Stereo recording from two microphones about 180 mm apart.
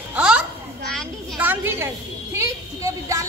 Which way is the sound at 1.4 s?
10° right (ahead or behind).